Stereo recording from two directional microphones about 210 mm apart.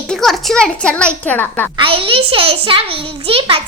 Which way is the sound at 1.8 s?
25° right (ahead or behind).